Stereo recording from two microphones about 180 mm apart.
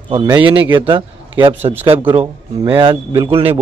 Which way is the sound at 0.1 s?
25° right (ahead or behind).